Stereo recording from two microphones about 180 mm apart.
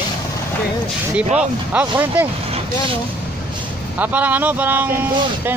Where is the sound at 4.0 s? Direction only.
10° right (ahead or behind).